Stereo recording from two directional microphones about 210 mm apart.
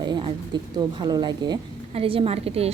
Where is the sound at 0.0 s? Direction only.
20° right (ahead or behind).